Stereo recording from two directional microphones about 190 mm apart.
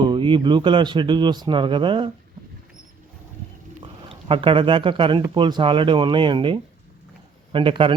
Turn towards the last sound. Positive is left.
turn(degrees=-25)  # may be behind; listen again after turning